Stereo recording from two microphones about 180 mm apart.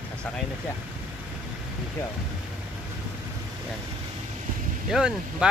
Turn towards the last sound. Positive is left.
turn(degrees=-5)  # may be behind; listen again after turning